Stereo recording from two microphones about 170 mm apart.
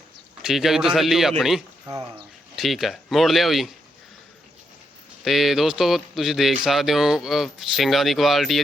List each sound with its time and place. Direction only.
0.4 s speech: centre (ahead or behind)
1.9 s speech: 30° right (ahead or behind)
2.6 s speech: centre (ahead or behind)
5.2 s speech: centre (ahead or behind)